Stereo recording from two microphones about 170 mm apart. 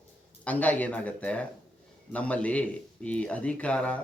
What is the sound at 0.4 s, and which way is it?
Speech, 10° left (ahead or behind).